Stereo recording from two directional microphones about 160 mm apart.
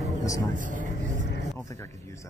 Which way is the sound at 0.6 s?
55° right (ahead or behind).